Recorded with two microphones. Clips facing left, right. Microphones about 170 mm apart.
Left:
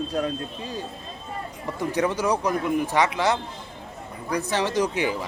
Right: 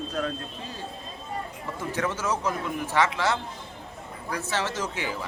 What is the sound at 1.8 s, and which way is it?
A man's voice, 15° left (ahead or behind).